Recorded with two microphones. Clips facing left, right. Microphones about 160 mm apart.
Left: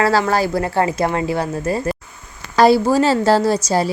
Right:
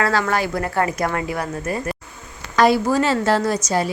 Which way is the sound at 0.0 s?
30° left (ahead or behind).